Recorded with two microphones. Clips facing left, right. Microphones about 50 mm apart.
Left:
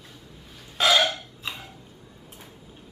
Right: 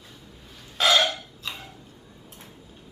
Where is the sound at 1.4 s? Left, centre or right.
Centre.